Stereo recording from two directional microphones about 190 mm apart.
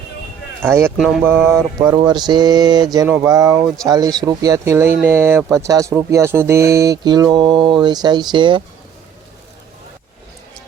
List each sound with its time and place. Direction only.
0.6 s mantra: 15° right (ahead or behind)
0.9 s speech: centre (ahead or behind)
1.5 s mantra: 15° right (ahead or behind)
2.0 s speech: 20° right (ahead or behind)